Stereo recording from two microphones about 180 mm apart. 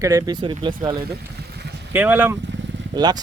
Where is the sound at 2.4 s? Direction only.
80° right.